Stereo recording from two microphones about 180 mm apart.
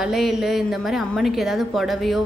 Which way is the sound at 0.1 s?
Centre (ahead or behind).